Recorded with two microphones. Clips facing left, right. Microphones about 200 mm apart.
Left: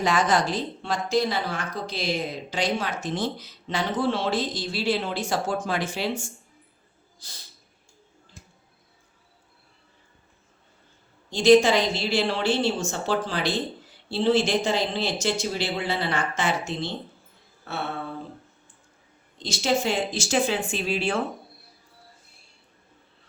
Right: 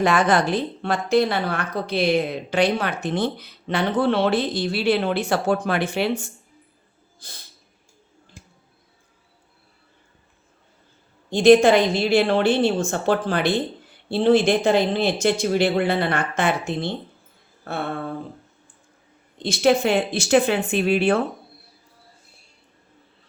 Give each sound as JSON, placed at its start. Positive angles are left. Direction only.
{"t": 0.0, "sound": "a woman's voice", "side_deg": -60}
{"t": 11.3, "sound": "a woman's voice", "side_deg": -55}
{"t": 17.7, "sound": "mantra", "side_deg": -50}
{"t": 19.4, "sound": "a woman's voice", "side_deg": -60}